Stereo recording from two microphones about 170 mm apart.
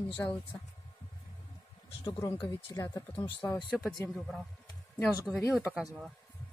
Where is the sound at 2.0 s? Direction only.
25° left (ahead or behind).